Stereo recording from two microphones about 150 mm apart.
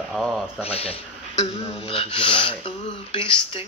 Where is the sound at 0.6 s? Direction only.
40° left (ahead or behind).